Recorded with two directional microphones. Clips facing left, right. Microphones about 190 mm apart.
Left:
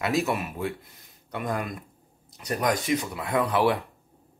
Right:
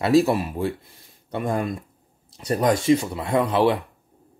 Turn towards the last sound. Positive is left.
turn(degrees=-25)  # may be behind; listen again after turning